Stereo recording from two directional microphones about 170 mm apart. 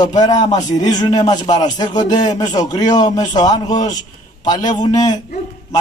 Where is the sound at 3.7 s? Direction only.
45° left (ahead or behind).